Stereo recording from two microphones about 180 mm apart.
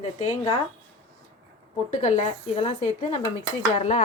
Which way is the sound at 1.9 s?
40° left (ahead or behind).